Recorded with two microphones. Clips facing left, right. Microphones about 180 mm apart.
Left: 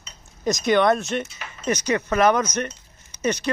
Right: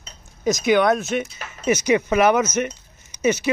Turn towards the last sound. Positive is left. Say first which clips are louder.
# right 4 dB
turn(degrees=-10)  # may be behind; listen again after turning